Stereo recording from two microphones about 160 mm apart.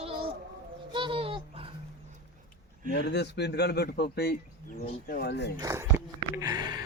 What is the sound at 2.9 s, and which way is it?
A man's voice, 90° left.